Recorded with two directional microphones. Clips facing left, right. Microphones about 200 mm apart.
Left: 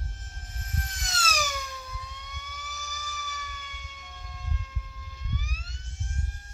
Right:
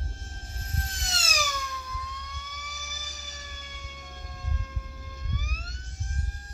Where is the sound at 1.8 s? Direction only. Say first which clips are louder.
Right 3 dB; 25° left (ahead or behind).